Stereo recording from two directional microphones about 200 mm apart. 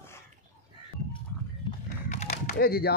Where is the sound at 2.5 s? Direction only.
50° left (ahead or behind).